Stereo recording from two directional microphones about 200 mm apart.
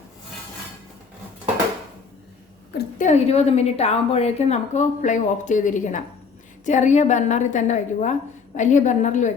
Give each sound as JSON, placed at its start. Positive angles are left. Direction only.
{"t": 2.7, "sound": "a woman's voice", "side_deg": 35}